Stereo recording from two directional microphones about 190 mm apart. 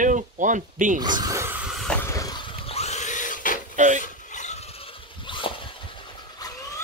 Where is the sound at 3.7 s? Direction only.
40° right (ahead or behind).